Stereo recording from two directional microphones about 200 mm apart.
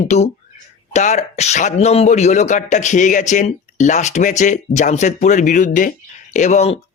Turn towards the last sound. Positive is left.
turn(degrees=35)  # may be behind; listen again after turning